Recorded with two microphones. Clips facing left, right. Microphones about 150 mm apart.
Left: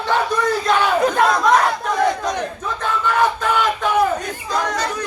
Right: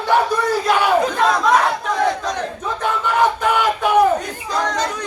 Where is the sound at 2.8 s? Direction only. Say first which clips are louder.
Right 1 dB; 15° right (ahead or behind).